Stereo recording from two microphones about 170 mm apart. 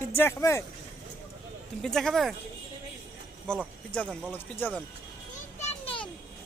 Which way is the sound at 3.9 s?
10° left (ahead or behind).